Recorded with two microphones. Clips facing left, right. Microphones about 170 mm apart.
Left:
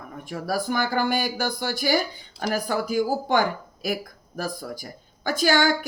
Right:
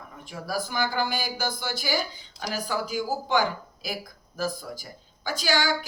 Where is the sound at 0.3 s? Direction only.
55° left (ahead or behind).